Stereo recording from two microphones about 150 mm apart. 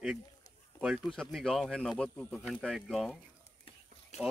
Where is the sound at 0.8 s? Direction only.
Centre (ahead or behind).